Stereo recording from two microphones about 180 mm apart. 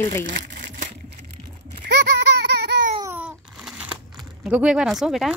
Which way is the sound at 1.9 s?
65° right (ahead or behind).